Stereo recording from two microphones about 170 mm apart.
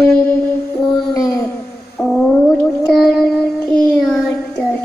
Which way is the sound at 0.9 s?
20° left (ahead or behind).